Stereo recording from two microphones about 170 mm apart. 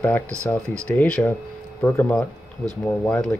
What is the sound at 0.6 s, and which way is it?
Speech, 5° left (ahead or behind).